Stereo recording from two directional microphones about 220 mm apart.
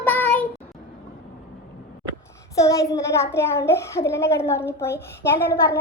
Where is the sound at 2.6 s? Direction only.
15° left (ahead or behind).